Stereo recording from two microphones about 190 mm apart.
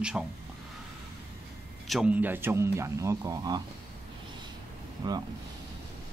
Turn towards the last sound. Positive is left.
turn(degrees=-25)  # may be behind; listen again after turning